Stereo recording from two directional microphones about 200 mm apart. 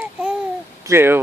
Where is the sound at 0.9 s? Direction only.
10° right (ahead or behind).